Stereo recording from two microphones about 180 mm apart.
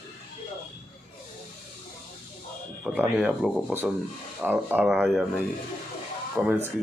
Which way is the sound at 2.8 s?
5° right (ahead or behind).